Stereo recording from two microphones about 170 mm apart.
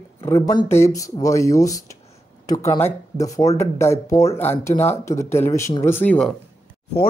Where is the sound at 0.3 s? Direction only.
20° left (ahead or behind).